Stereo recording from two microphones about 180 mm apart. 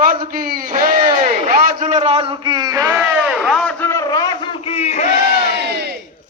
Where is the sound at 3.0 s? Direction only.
Centre (ahead or behind).